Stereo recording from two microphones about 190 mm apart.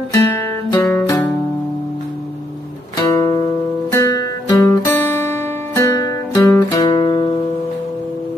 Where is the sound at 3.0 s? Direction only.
20° left (ahead or behind).